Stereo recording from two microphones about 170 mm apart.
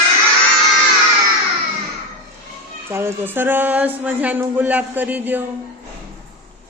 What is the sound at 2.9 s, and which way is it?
Speech, 15° right (ahead or behind).